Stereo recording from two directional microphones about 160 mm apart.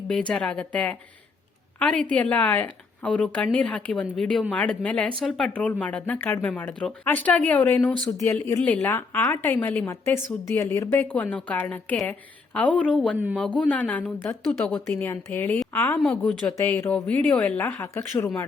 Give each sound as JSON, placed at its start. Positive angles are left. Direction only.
{"t": 0.1, "sound": "a woman's voice", "side_deg": 5}
{"t": 16.0, "sound": "a woman's voice", "side_deg": 5}